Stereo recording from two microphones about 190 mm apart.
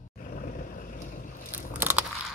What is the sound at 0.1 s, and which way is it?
Vehicle, 45° left (ahead or behind).